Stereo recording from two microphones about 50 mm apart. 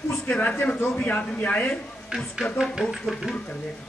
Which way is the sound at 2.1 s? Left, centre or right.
Centre.